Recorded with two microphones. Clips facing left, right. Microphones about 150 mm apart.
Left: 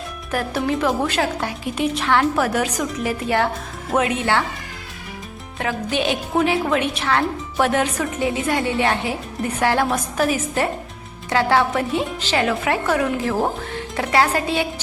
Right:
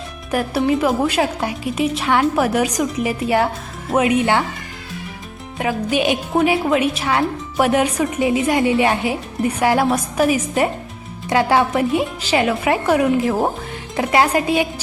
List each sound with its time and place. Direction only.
0.3 s a woman's voice: 10° right (ahead or behind)
5.5 s a woman's voice: 10° right (ahead or behind)